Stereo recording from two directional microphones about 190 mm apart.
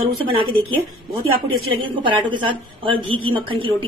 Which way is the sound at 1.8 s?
25° right (ahead or behind).